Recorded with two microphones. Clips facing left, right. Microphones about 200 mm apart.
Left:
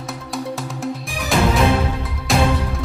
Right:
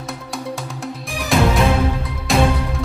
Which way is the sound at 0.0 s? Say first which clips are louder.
Left 1 dB; centre (ahead or behind).